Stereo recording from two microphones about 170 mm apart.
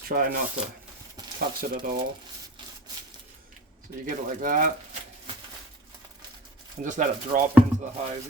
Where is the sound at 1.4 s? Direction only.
55° right (ahead or behind).